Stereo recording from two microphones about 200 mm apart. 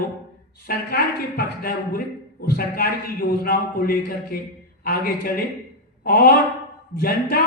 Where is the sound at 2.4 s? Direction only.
50° left (ahead or behind).